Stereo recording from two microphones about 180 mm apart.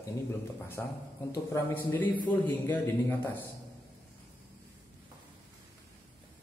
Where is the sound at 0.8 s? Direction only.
10° left (ahead or behind).